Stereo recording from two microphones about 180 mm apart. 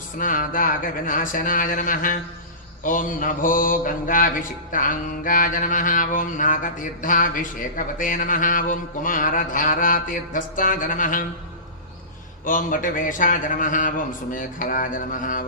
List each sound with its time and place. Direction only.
0.2 s mantra: 50° left (ahead or behind)
12.5 s mantra: 50° left (ahead or behind)